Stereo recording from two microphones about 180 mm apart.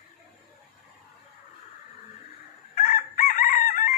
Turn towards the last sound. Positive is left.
turn(degrees=50)  # may be behind; listen again after turning